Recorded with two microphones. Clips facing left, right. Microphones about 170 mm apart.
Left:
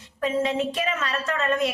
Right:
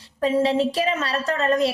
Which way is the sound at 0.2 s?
35° right (ahead or behind).